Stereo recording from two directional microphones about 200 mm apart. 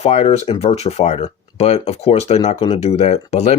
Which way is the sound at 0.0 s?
30° left (ahead or behind).